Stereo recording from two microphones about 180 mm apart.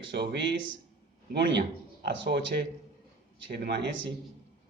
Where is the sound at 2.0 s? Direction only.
75° right (ahead or behind).